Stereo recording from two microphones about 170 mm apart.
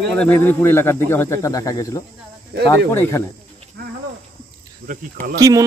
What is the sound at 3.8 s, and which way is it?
Cricket, 65° right (ahead or behind).